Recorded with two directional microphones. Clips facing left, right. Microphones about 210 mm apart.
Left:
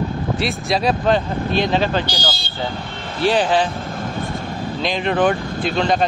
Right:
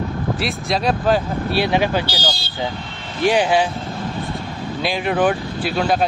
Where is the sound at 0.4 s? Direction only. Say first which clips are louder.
Left 3 dB; centre (ahead or behind).